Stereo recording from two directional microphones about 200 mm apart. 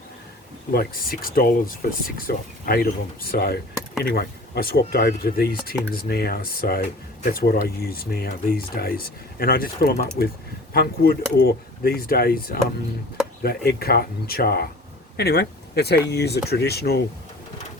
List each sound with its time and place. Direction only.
0.7 s speech: 45° left (ahead or behind)